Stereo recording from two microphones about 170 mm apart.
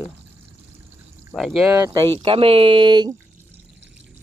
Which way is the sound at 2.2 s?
35° right (ahead or behind).